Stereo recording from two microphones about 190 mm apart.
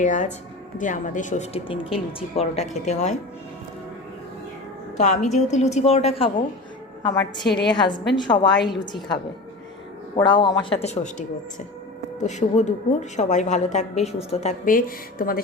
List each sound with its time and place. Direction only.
0.0 s a woman's voice: 40° left (ahead or behind)
4.9 s a woman's voice: 40° left (ahead or behind)